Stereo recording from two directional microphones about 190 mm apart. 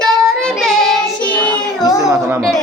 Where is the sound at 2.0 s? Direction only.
15° right (ahead or behind).